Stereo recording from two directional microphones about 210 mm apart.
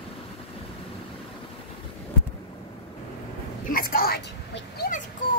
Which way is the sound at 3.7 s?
45° left (ahead or behind).